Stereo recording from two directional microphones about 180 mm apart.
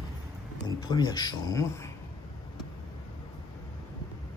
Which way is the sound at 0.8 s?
20° left (ahead or behind).